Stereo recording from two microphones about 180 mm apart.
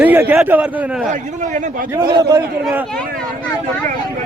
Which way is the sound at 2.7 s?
Centre (ahead or behind).